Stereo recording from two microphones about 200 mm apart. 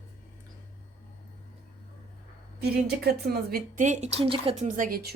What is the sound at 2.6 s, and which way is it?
Speech, 50° right (ahead or behind).